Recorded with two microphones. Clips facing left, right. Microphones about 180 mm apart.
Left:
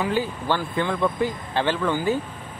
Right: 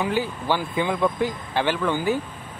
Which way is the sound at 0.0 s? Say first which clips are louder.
Even; 15° right (ahead or behind).